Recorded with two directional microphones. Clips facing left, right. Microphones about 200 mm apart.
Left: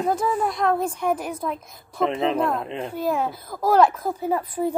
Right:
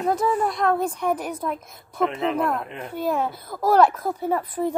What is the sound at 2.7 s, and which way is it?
Speech, 25° left (ahead or behind).